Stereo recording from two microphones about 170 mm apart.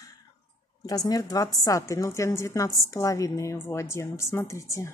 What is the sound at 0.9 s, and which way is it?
A woman's voice, 20° left (ahead or behind).